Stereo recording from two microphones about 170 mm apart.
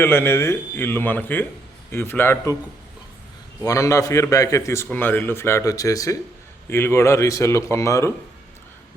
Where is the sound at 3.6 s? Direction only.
20° left (ahead or behind).